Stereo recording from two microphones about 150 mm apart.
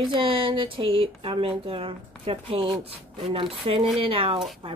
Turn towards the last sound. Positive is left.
turn(degrees=-40)  # may be behind; listen again after turning